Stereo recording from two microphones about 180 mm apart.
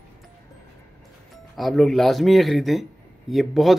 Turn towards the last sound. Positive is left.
turn(degrees=0)  # may be behind; listen again after turning